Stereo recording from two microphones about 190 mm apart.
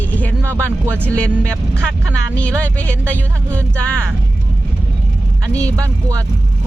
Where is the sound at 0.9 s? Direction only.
5° left (ahead or behind).